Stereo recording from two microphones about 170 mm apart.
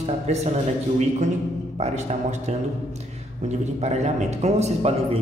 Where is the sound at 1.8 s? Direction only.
40° right (ahead or behind).